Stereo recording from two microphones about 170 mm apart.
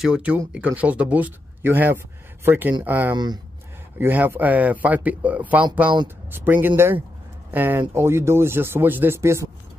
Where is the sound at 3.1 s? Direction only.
25° right (ahead or behind).